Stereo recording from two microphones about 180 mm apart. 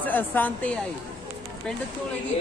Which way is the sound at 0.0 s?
10° left (ahead or behind).